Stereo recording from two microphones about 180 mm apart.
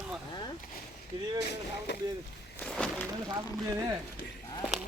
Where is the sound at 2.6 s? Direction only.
5° left (ahead or behind).